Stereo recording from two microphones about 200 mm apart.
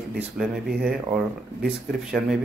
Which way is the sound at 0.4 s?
5° right (ahead or behind).